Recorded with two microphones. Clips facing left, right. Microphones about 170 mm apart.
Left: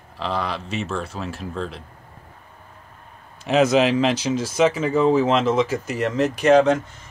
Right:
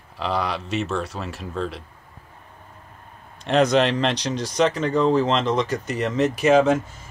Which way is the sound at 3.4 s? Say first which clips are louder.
Left 1 dB; 5° left (ahead or behind).